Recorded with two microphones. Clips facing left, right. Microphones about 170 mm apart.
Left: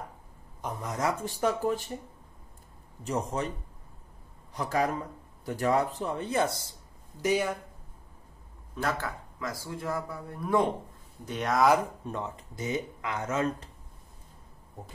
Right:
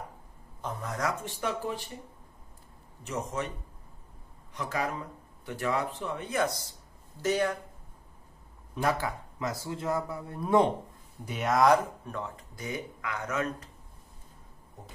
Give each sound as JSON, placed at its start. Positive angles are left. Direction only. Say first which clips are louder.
{"t": 0.6, "sound": "speech", "louder": "left 1 dB", "side_deg": 15}
{"t": 1.2, "sound": "speech", "louder": "left 5 dB", "side_deg": 40}
{"t": 3.0, "sound": "speech", "louder": "left 3 dB", "side_deg": 35}
{"t": 4.6, "sound": "speech", "louder": "left 4 dB", "side_deg": 40}
{"t": 7.2, "sound": "speech", "louder": "even", "side_deg": 10}
{"t": 8.7, "sound": "a man's voice", "louder": "right 2 dB", "side_deg": -15}
{"t": 11.2, "sound": "speech", "louder": "right 1 dB", "side_deg": -5}
{"t": 12.0, "sound": "speech", "louder": "left 2 dB", "side_deg": 20}